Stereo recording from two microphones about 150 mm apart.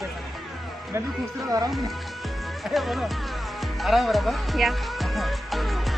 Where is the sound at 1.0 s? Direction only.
25° right (ahead or behind).